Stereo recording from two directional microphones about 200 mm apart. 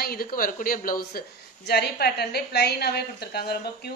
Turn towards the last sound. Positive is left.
turn(degrees=55)  # may be behind; listen again after turning